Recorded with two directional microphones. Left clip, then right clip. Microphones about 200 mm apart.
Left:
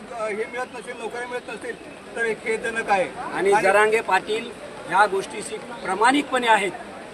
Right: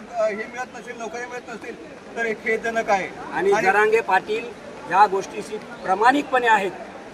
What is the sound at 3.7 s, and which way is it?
Speech, 15° left (ahead or behind).